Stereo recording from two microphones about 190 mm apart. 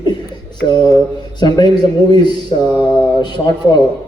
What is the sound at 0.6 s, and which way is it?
A man's voice, 25° left (ahead or behind).